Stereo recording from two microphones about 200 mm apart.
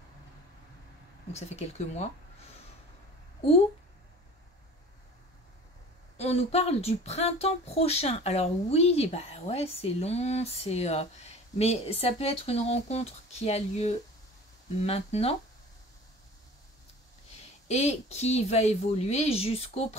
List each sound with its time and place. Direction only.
1.3 s speech: 35° left (ahead or behind)
6.1 s speech: 30° left (ahead or behind)
17.6 s speech: 35° left (ahead or behind)